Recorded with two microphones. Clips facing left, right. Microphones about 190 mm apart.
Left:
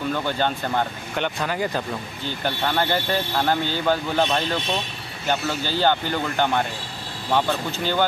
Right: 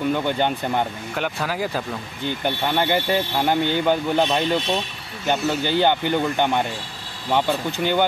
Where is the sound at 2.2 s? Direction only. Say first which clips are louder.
Right 2 dB; 15° right (ahead or behind).